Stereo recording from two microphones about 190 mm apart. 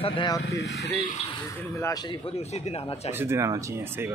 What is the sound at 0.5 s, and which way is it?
Speech, 60° left (ahead or behind).